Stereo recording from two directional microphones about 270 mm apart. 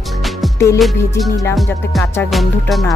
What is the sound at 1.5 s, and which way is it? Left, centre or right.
Music, centre.